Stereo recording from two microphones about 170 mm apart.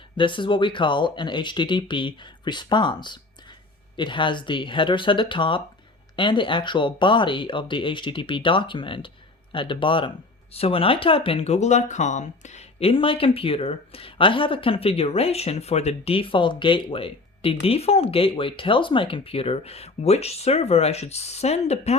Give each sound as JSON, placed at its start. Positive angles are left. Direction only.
{"t": 0.2, "sound": "speech", "side_deg": 30}